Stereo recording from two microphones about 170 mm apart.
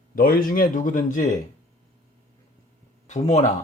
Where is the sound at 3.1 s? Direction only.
40° left (ahead or behind).